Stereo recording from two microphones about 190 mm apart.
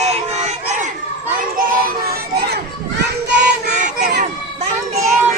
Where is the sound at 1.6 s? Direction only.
50° right (ahead or behind).